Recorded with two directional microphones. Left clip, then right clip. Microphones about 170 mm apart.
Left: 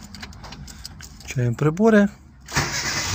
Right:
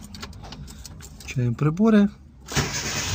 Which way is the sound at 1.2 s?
10° left (ahead or behind).